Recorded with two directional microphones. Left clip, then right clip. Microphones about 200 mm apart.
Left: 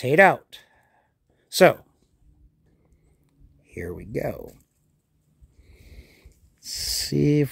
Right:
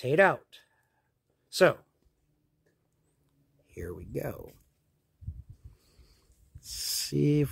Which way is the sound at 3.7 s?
25° left (ahead or behind).